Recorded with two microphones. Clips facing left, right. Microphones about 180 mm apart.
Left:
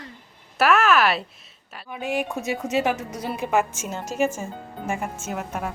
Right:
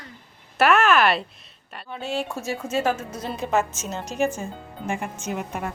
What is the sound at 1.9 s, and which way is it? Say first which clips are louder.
A woman's voice: left 2 dB; 15° left (ahead or behind).